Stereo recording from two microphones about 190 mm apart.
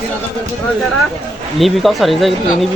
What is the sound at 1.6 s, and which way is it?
Speech, centre (ahead or behind).